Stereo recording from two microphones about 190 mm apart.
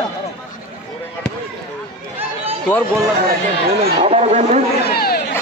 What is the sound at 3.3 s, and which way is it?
Speech, 55° right (ahead or behind).